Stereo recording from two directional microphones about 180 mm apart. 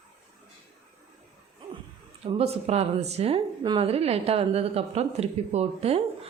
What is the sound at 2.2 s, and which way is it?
A woman's voice, 35° right (ahead or behind).